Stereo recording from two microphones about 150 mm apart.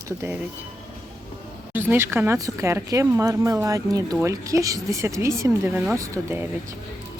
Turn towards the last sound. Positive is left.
turn(degrees=-20)  # may be behind; listen again after turning